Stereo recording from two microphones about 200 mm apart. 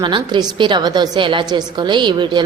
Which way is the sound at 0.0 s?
25° right (ahead or behind).